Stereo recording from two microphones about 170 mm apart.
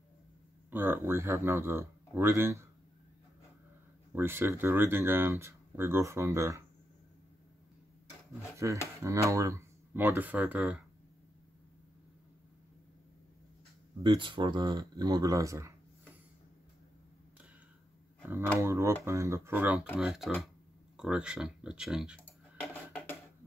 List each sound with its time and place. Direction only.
0.7 s speech: 10° right (ahead or behind)
4.1 s speech: 15° right (ahead or behind)
8.6 s speech: 20° right (ahead or behind)
14.0 s speech: 30° right (ahead or behind)
18.6 s speech: 15° right (ahead or behind)
22.2 s a sound: 10° left (ahead or behind)